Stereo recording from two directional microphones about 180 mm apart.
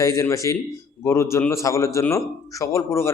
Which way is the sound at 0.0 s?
15° left (ahead or behind).